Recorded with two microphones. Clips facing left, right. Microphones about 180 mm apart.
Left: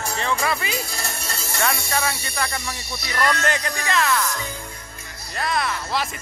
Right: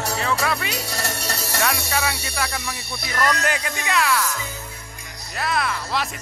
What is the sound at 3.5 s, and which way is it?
Speech, 5° right (ahead or behind).